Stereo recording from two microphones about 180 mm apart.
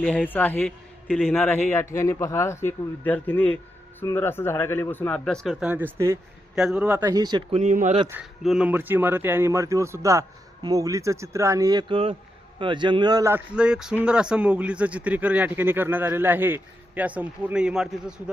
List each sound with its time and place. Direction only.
0.0 s a man's voice: 5° left (ahead or behind); by 7.1 s 10° right (ahead or behind)
7.1 s speech: 20° right (ahead or behind)
7.5 s speech: 40° right (ahead or behind)
8.2 s a man's voice: 5° right (ahead or behind)